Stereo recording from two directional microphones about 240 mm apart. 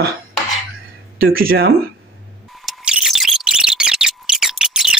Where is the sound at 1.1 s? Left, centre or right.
Right.